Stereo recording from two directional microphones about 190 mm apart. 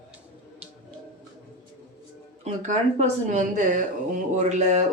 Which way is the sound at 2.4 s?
40° right (ahead or behind).